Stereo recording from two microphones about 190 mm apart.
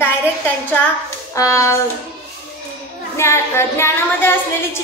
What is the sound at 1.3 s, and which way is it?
Speech, 15° left (ahead or behind).